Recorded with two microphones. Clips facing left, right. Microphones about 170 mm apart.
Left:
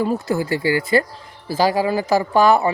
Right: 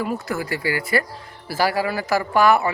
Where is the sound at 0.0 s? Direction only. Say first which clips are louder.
Left 5 dB; 30° left (ahead or behind).